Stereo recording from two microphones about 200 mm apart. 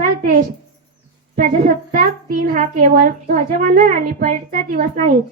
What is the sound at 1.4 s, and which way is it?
A child's voice, 40° right (ahead or behind).